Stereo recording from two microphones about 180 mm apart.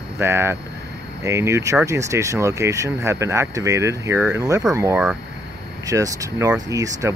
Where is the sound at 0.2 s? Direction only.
15° right (ahead or behind).